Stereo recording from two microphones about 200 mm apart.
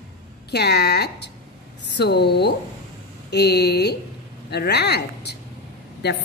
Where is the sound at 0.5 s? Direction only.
55° left (ahead or behind).